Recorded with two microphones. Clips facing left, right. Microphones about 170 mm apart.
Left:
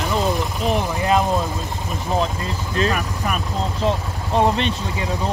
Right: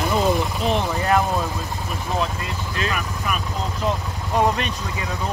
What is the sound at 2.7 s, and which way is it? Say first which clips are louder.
Vehicle: left 6 dB; 35° left (ahead or behind).